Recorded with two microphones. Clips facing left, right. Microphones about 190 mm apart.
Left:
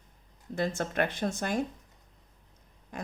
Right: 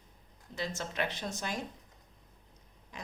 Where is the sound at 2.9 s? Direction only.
50° left (ahead or behind).